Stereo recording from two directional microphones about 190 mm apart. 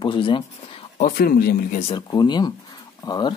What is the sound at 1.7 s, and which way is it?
Speech, 30° left (ahead or behind).